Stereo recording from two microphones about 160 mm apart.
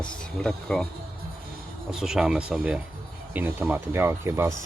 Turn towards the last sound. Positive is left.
turn(degrees=-15)  # may be behind; listen again after turning